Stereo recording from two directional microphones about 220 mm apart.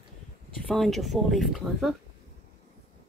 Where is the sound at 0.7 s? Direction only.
Centre (ahead or behind).